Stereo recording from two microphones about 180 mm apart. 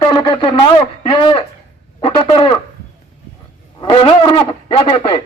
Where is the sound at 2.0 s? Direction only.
30° left (ahead or behind).